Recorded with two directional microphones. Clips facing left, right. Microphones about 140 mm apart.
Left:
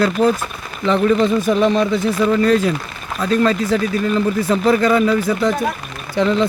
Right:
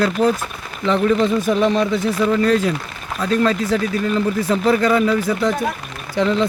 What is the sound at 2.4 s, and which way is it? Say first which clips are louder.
Speech: left 2 dB; 10° left (ahead or behind).